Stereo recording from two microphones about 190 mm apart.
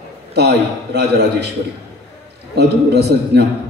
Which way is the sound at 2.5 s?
60° right (ahead or behind).